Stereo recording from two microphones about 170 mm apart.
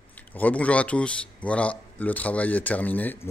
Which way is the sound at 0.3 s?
10° left (ahead or behind).